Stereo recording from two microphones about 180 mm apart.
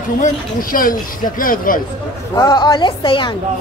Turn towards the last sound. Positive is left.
turn(degrees=25)  # may be behind; listen again after turning